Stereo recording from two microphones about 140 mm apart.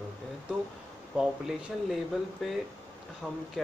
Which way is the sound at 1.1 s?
5° right (ahead or behind).